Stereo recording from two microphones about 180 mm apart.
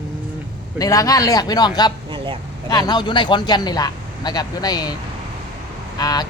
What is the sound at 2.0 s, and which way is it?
Vehicle, 25° right (ahead or behind).